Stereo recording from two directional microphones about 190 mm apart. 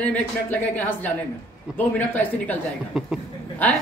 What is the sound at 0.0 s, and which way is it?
A woman's voice, 10° left (ahead or behind).